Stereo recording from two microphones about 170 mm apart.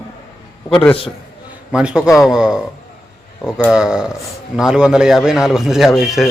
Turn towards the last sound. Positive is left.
turn(degrees=0)  # may be behind; listen again after turning